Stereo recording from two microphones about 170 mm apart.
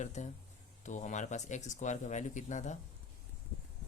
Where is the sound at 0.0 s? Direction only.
45° left (ahead or behind).